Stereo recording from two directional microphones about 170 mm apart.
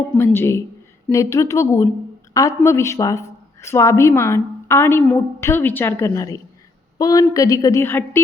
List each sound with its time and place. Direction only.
0.3 s a woman's voice: 15° left (ahead or behind)